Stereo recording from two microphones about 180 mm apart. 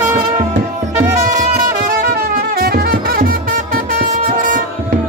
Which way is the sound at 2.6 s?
55° right (ahead or behind).